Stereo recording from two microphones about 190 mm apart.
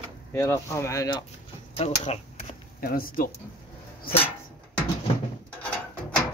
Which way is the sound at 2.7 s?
50° left (ahead or behind).